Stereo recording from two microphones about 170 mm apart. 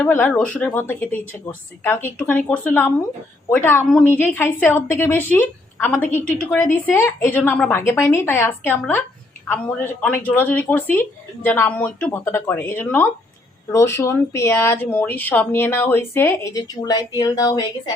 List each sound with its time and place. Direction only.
0.0 s speech: 10° left (ahead or behind)
2.0 s speech: 10° left (ahead or behind)